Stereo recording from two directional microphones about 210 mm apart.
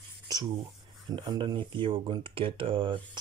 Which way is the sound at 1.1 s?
20° right (ahead or behind).